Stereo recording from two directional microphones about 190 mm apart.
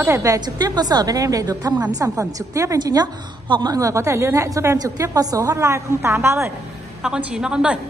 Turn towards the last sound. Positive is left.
turn(degrees=-5)  # may be behind; listen again after turning